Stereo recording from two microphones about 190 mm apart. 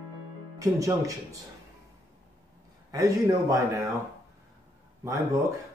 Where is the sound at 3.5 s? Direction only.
15° right (ahead or behind).